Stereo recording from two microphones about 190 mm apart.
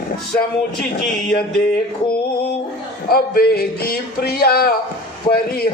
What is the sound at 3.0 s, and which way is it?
A man's voice, 50° left (ahead or behind).